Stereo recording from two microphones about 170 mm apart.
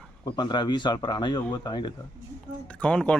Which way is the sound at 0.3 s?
25° left (ahead or behind).